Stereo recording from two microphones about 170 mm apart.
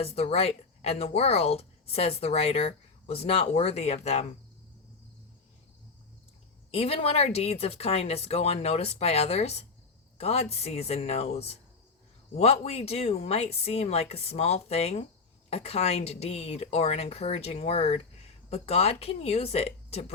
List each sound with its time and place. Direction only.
0.0 s speech: 35° left (ahead or behind)
6.7 s speech: 35° left (ahead or behind)